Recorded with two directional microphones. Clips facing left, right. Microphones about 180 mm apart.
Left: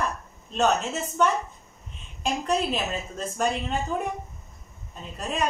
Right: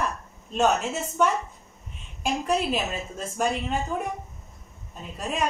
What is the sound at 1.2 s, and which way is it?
A woman's voice, 5° right (ahead or behind).